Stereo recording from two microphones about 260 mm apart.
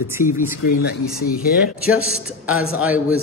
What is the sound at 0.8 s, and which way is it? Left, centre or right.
Speech, left.